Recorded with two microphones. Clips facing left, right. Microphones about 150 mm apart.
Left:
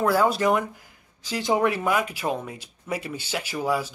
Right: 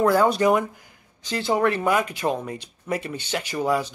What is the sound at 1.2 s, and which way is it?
Speech, 10° left (ahead or behind).